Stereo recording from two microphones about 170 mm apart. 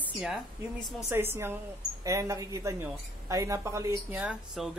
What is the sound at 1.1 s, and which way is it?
A woman's voice, 15° right (ahead or behind).